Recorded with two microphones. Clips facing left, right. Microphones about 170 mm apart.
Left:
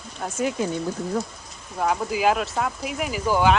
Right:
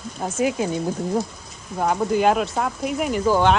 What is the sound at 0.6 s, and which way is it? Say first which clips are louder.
Speech: right 2 dB; 20° right (ahead or behind).